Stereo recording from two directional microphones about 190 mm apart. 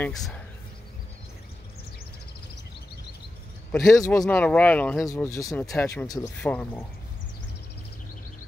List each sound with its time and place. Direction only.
0.0 s speech: 5° left (ahead or behind)
3.7 s speech: 15° left (ahead or behind)
4.2 s speech: 5° left (ahead or behind)